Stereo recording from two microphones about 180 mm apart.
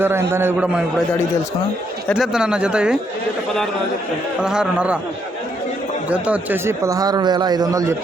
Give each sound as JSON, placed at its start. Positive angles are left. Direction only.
{"t": 0.0, "sound": "a man's voice", "side_deg": -15}
{"t": 2.0, "sound": "speech", "side_deg": 0}
{"t": 4.4, "sound": "speech", "side_deg": -5}
{"t": 6.1, "sound": "a man's voice", "side_deg": -5}